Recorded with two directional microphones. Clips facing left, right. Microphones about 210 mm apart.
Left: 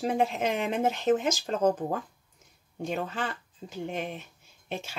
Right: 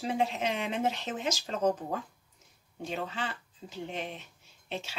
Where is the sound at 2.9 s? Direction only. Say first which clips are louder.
Left 3 dB; 50° left (ahead or behind).